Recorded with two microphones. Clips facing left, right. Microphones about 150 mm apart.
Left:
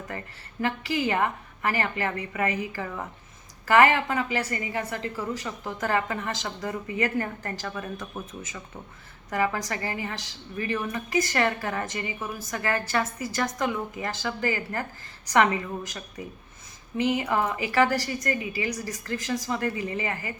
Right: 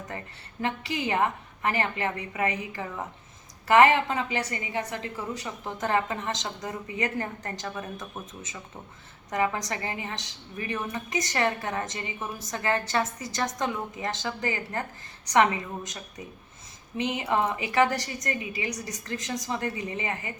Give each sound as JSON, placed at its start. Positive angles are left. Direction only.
{"t": 0.6, "sound": "a woman's voice", "side_deg": -20}
{"t": 17.0, "sound": "a woman's voice", "side_deg": -20}